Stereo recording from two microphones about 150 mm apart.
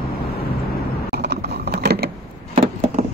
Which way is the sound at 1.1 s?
90° right.